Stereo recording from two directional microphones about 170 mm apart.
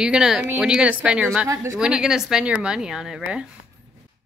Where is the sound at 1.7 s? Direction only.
5° right (ahead or behind).